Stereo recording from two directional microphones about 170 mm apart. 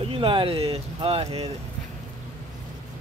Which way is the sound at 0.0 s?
35° right (ahead or behind).